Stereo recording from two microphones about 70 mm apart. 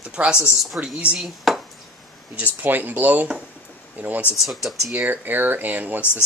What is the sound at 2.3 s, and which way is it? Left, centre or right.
Speech, right.